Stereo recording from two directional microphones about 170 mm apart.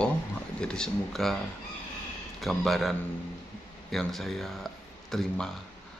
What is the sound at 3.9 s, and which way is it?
Speech, centre (ahead or behind).